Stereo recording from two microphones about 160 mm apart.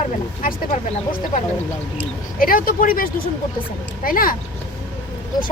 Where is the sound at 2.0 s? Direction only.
65° left (ahead or behind).